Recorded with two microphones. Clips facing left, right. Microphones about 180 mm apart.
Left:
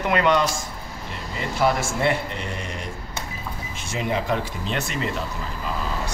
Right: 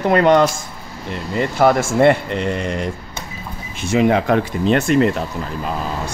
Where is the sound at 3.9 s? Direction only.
70° right (ahead or behind); by 5.1 s 55° right (ahead or behind).